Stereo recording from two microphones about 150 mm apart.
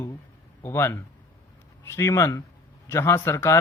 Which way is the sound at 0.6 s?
15° left (ahead or behind).